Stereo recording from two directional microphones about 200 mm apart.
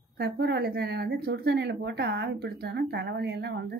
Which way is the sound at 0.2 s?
55° right (ahead or behind).